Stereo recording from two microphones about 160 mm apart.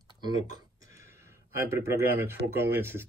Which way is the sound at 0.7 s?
20° right (ahead or behind).